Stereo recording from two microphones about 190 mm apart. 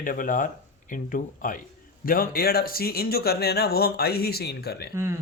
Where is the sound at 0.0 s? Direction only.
45° left (ahead or behind).